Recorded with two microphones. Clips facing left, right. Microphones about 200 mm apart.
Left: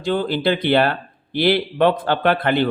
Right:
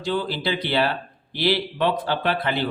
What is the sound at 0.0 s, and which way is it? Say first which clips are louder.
Speech: left 5 dB; 55° left (ahead or behind).